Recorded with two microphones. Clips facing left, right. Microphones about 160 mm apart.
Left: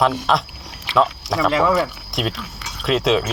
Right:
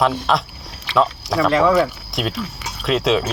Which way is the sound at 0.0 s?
Centre (ahead or behind).